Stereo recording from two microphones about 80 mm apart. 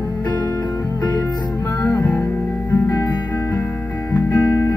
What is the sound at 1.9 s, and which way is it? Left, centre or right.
Music, left.